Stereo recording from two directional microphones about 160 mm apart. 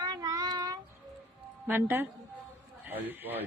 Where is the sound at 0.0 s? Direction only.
25° right (ahead or behind).